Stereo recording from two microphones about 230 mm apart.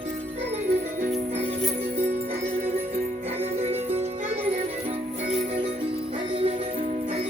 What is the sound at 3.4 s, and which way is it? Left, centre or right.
Music, centre.